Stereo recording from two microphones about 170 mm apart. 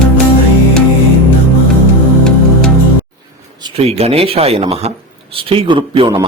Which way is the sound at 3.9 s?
35° right (ahead or behind).